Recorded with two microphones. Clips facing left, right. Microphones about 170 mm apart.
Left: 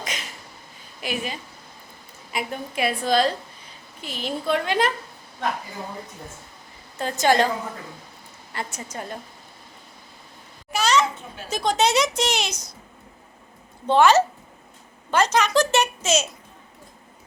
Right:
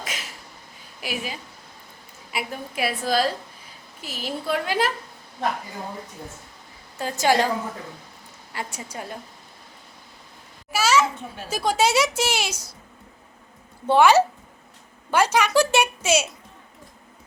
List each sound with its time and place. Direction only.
0.0 s a sound: 5° right (ahead or behind)
1.0 s a woman's voice: 5° right (ahead or behind)
7.0 s a woman's voice: 10° right (ahead or behind)
8.5 s a woman's voice: 10° right (ahead or behind)
10.7 s a child's voice: 5° right (ahead or behind)
13.8 s a woman's voice: 10° right (ahead or behind)